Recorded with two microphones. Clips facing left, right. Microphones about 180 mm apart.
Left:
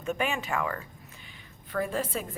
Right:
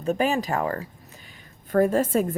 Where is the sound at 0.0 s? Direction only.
35° right (ahead or behind).